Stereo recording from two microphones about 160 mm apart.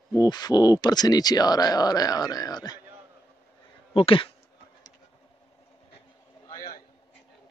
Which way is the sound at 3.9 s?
35° left (ahead or behind).